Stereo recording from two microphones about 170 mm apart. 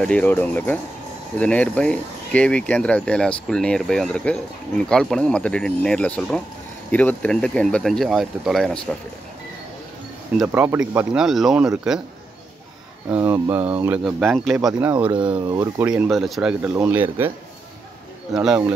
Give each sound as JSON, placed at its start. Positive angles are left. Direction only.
{"t": 0.0, "sound": "speech", "side_deg": 5}
{"t": 10.3, "sound": "speech", "side_deg": -10}
{"t": 11.1, "sound": "speech", "side_deg": 0}
{"t": 13.1, "sound": "speech", "side_deg": -10}
{"t": 15.3, "sound": "speech", "side_deg": -20}
{"t": 16.0, "sound": "speech", "side_deg": 0}
{"t": 18.3, "sound": "speech", "side_deg": -5}